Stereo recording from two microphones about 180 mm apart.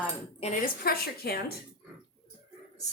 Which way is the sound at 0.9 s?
60° left (ahead or behind).